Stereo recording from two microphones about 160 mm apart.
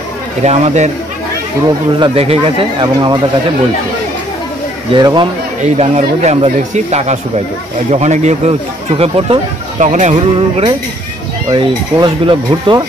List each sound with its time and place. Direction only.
0.4 s speech: 45° right (ahead or behind)
2.0 s speech: 35° right (ahead or behind)
4.9 s a man's voice: 30° right (ahead or behind)
5.6 s speech: 45° right (ahead or behind)
10.1 s speech: 30° right (ahead or behind)